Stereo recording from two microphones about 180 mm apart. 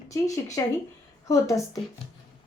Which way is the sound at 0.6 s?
20° left (ahead or behind).